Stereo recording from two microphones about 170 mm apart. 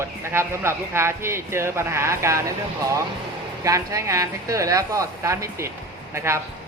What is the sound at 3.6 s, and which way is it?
A woman's voice, 20° right (ahead or behind).